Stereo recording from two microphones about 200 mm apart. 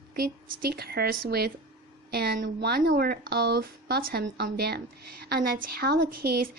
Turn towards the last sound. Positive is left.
turn(degrees=-50)  # may be behind; listen again after turning